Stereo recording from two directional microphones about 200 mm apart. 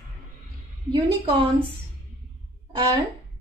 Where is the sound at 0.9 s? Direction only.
25° right (ahead or behind).